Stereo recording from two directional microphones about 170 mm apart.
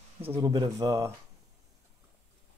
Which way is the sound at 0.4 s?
20° right (ahead or behind).